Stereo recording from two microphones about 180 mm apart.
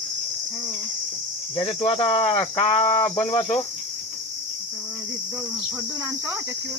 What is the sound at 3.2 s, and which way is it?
Cricket, 30° left (ahead or behind).